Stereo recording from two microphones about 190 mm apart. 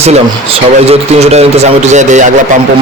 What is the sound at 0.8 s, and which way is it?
A man's voice, 35° right (ahead or behind).